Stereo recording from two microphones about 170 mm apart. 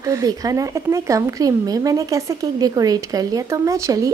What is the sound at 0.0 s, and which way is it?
Speech, 20° right (ahead or behind).